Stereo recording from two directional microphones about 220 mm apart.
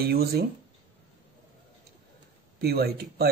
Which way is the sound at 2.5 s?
45° right (ahead or behind).